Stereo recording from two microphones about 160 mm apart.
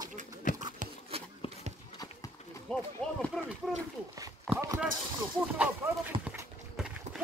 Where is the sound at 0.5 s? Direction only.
55° left (ahead or behind).